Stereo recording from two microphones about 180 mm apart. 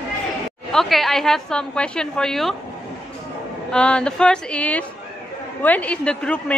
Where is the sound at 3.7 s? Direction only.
5° left (ahead or behind).